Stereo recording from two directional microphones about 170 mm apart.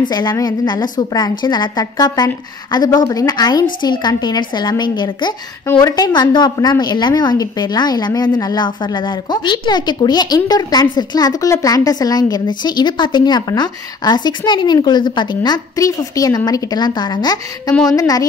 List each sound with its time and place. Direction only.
0.1 s a woman's voice: 25° left (ahead or behind)